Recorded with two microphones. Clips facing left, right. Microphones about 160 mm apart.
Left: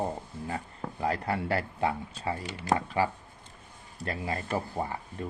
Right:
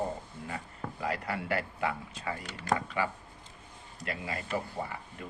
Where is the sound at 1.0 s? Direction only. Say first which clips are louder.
Left 5 dB; 35° left (ahead or behind).